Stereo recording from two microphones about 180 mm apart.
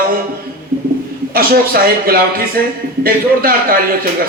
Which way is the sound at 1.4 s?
55° right (ahead or behind).